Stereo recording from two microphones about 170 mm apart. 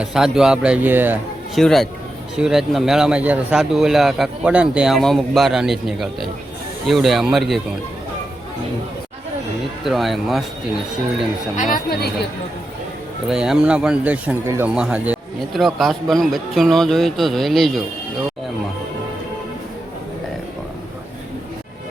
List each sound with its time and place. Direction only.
0.0 s speech: 5° right (ahead or behind)
1.5 s speech: centre (ahead or behind)
9.8 s speech: centre (ahead or behind)
11.5 s a woman's voice: 50° left (ahead or behind); by 12.3 s 70° left (ahead or behind)
13.2 s speech: 5° right (ahead or behind)